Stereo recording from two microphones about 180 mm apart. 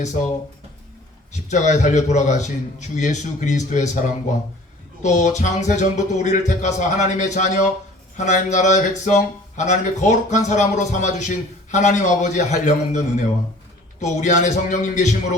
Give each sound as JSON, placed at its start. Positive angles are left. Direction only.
{"t": 1.5, "sound": "speech", "side_deg": 40}
{"t": 5.0, "sound": "speech", "side_deg": 40}